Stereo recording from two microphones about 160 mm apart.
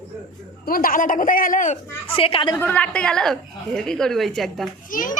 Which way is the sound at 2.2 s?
35° left (ahead or behind).